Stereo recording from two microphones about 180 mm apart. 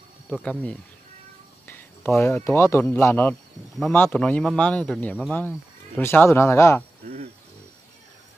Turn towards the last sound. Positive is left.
turn(degrees=15)  # may be behind; listen again after turning